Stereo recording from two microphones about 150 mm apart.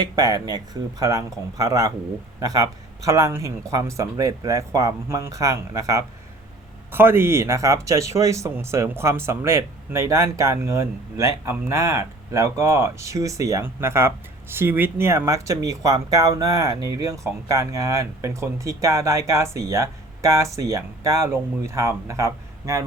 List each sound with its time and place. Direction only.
0.0 s speech: 25° right (ahead or behind)